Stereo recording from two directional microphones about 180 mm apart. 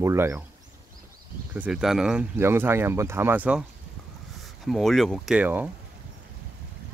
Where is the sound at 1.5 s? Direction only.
5° right (ahead or behind).